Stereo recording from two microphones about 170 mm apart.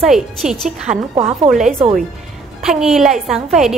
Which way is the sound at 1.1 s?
35° right (ahead or behind).